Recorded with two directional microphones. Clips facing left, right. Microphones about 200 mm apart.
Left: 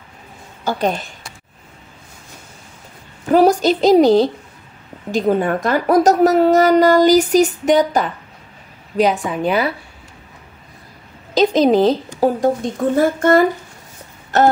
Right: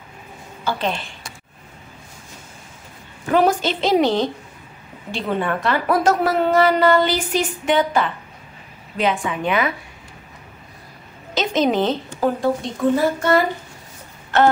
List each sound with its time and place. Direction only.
0.7 s speech: 40° left (ahead or behind)
3.3 s a woman's voice: 40° left (ahead or behind)
11.3 s a woman's voice: 35° left (ahead or behind)